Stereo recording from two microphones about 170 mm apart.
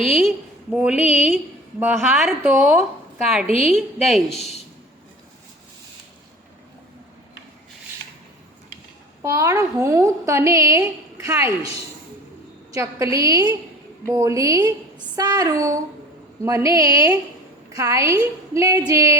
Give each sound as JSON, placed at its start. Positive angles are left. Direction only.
{"t": 0.2, "sound": "a woman's voice", "side_deg": -5}
{"t": 1.0, "sound": "a woman's voice", "side_deg": 40}
{"t": 1.8, "sound": "a woman's voice", "side_deg": -10}
{"t": 3.4, "sound": "a woman's voice", "side_deg": 40}
{"t": 3.9, "sound": "speech", "side_deg": 0}
{"t": 9.2, "sound": "a woman's voice", "side_deg": -20}
{"t": 12.7, "sound": "a woman's voice", "side_deg": -20}